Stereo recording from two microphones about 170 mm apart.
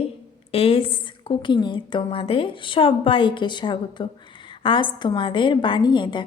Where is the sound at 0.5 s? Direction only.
35° left (ahead or behind).